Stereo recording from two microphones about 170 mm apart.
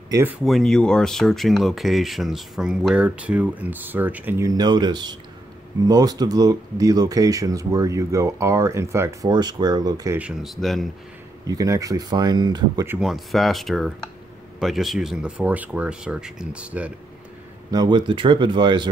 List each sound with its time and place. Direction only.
0.1 s speech: 15° right (ahead or behind)
0.4 s speech: centre (ahead or behind); by 10.1 s 20° right (ahead or behind)
10.1 s speech: 5° right (ahead or behind)
11.4 s speech: 20° right (ahead or behind)
12.8 s speech: 5° right (ahead or behind)
17.6 s speech: 25° right (ahead or behind)